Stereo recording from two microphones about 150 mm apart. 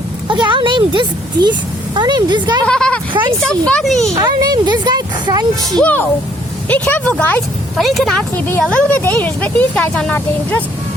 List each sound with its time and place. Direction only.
0.3 s a woman's voice: 30° right (ahead or behind)
2.6 s speech: 5° left (ahead or behind)
4.1 s speech: 25° right (ahead or behind)
5.7 s speech: 10° left (ahead or behind)
8.4 s speech: 10° left (ahead or behind)